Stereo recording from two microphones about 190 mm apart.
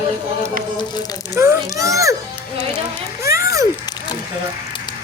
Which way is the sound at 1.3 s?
15° right (ahead or behind).